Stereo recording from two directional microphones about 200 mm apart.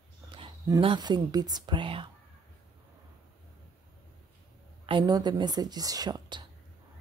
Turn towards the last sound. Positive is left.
turn(degrees=-20)  # may be behind; listen again after turning